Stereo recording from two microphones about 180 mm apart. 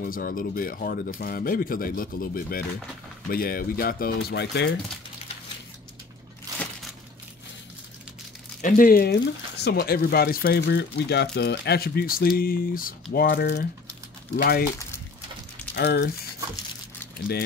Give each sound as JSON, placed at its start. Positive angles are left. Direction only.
{"t": 0.0, "sound": "speech", "side_deg": 50}
{"t": 6.5, "sound": "crushing", "side_deg": -20}
{"t": 8.5, "sound": "speech", "side_deg": 50}
{"t": 15.7, "sound": "speech", "side_deg": 70}